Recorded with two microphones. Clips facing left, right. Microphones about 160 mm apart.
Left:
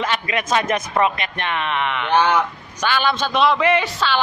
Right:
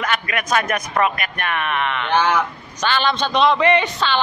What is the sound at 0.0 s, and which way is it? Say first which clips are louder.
A man's voice: left 1 dB; 25° left (ahead or behind).